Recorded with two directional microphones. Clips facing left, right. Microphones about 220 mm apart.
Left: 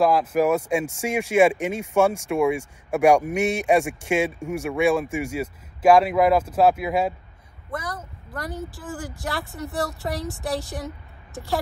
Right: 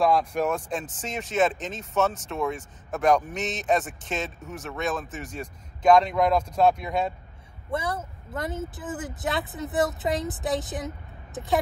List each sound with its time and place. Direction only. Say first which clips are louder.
0.0 s speech: left 4 dB; 5° left (ahead or behind)
7.7 s speech: right 3 dB; 25° right (ahead or behind)